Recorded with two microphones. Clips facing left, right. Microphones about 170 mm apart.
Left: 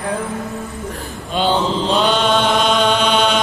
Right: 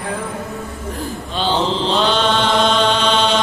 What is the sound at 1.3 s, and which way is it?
Chant, 10° left (ahead or behind).